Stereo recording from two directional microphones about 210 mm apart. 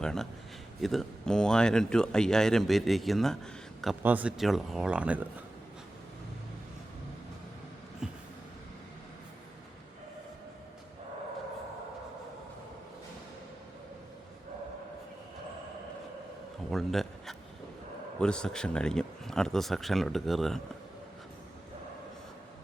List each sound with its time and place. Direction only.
0.0 s speech: centre (ahead or behind)
8.0 s vehicle: 5° right (ahead or behind)
16.7 s a sound: centre (ahead or behind)
18.2 s speech: 5° left (ahead or behind)